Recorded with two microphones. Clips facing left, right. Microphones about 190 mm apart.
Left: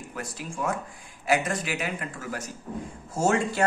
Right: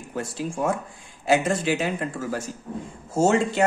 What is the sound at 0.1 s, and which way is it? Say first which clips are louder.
Speech: right 9 dB; 30° right (ahead or behind).